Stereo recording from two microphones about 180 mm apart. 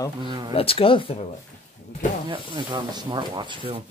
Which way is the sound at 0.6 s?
30° left (ahead or behind).